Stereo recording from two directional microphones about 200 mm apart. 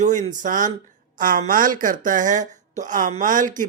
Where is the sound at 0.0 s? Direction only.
40° right (ahead or behind).